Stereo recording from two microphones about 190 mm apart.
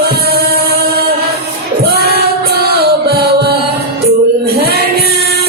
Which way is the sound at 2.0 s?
55° right (ahead or behind).